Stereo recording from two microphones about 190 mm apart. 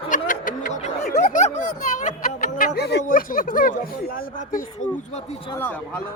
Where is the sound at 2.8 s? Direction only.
55° left (ahead or behind).